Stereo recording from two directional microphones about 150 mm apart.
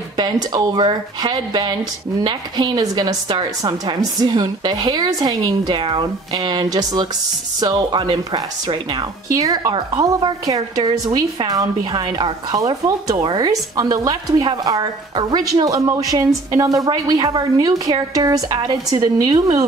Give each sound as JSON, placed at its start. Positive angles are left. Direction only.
{"t": 0.2, "sound": "a woman's voice", "side_deg": -25}